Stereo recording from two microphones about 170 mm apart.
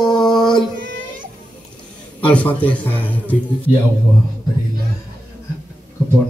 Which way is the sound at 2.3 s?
10° left (ahead or behind).